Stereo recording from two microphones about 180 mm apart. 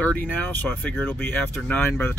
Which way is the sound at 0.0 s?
10° left (ahead or behind).